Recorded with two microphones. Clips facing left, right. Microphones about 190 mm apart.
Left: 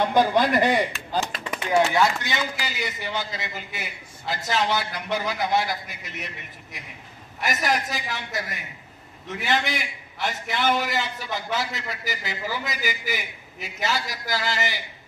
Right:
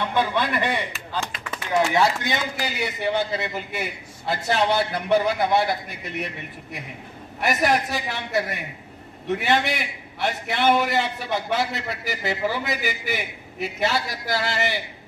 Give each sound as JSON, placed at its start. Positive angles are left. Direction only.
{"t": 0.0, "sound": "speech", "side_deg": 40}
{"t": 1.5, "sound": "a sound", "side_deg": 15}
{"t": 2.2, "sound": "a man's voice", "side_deg": -60}